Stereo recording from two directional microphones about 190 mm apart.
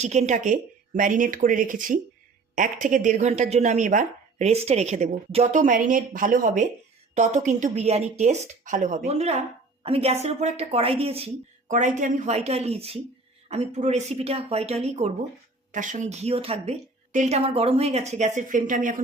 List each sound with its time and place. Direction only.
0.0 s a woman's voice: 35° right (ahead or behind)
11.7 s speech: 40° right (ahead or behind)